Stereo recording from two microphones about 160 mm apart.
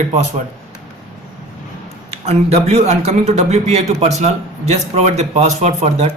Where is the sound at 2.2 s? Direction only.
40° right (ahead or behind).